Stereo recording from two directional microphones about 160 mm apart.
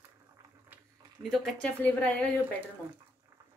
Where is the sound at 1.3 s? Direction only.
5° left (ahead or behind).